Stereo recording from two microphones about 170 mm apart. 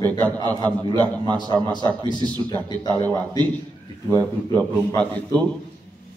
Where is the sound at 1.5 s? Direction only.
25° right (ahead or behind).